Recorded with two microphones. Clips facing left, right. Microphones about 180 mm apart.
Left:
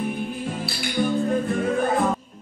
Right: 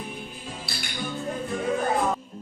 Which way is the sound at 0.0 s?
55° left (ahead or behind).